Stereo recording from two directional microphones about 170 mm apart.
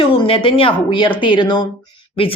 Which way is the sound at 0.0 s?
30° left (ahead or behind).